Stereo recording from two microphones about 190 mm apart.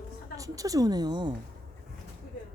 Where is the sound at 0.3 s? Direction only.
20° right (ahead or behind).